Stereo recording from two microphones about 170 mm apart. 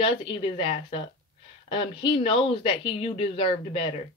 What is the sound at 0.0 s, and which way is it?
Speech, 30° left (ahead or behind).